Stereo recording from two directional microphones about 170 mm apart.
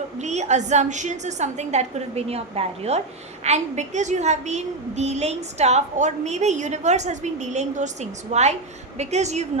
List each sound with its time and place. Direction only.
0.2 s a woman's voice: 40° right (ahead or behind)